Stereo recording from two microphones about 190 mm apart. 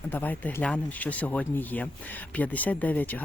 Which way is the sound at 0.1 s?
10° left (ahead or behind).